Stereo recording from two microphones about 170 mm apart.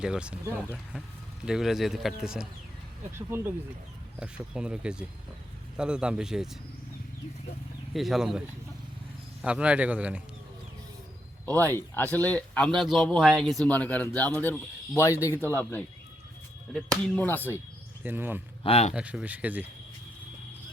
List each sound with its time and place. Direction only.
0.0 s a man's voice: 5° right (ahead or behind)
7.9 s a man's voice: centre (ahead or behind)
11.7 s speech: 10° left (ahead or behind)
18.0 s a man's voice: 10° right (ahead or behind)
18.6 s speech: 40° left (ahead or behind)
18.9 s a man's voice: 5° right (ahead or behind)